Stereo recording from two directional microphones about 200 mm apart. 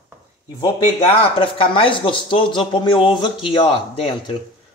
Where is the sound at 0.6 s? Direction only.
25° left (ahead or behind).